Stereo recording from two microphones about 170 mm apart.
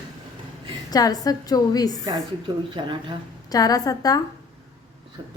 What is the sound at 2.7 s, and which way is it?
Speech, 30° right (ahead or behind).